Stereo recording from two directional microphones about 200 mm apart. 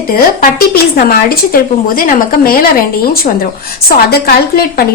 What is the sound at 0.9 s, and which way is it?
A woman's voice, 50° left (ahead or behind).